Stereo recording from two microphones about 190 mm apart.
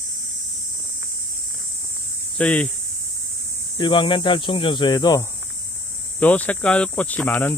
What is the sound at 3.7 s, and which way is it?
Speech, 25° left (ahead or behind).